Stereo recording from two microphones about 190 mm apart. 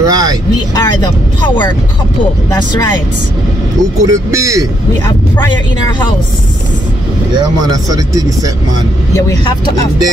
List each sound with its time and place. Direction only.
0.0 s vehicle: 20° right (ahead or behind)
0.7 s speech: 20° left (ahead or behind)
2.5 s speech: 20° left (ahead or behind)
4.0 s speech: 15° right (ahead or behind)
7.3 s speech: 20° right (ahead or behind)
9.1 s speech: 20° left (ahead or behind)